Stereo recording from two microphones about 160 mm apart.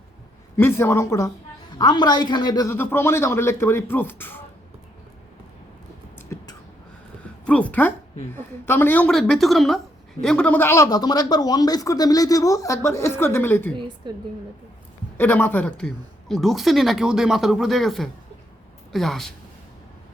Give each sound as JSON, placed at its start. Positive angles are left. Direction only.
{"t": 0.5, "sound": "speech", "side_deg": 15}
{"t": 1.8, "sound": "speech", "side_deg": 25}
{"t": 6.1, "sound": "a sound", "side_deg": 20}
{"t": 7.4, "sound": "a woman's voice", "side_deg": 10}
{"t": 13.7, "sound": "a woman's voice", "side_deg": -30}
{"t": 15.2, "sound": "a woman's voice", "side_deg": 10}